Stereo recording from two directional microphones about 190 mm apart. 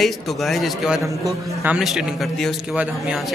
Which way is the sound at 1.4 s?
15° right (ahead or behind).